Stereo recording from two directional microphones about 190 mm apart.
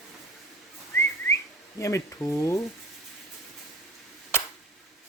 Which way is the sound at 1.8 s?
15° left (ahead or behind).